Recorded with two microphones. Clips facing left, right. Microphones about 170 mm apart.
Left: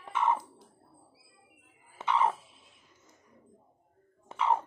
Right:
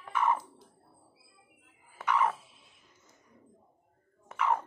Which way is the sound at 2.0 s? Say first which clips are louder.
Left 1 dB; 25° left (ahead or behind).